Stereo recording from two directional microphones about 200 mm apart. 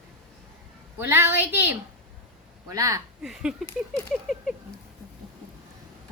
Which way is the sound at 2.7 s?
15° right (ahead or behind).